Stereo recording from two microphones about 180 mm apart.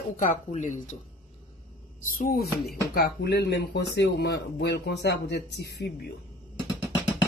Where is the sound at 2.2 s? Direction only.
55° left (ahead or behind).